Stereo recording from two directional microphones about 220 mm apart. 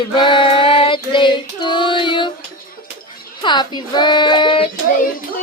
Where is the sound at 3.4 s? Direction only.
20° left (ahead or behind).